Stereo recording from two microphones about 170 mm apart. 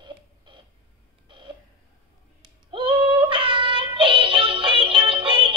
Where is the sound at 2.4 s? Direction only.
30° right (ahead or behind).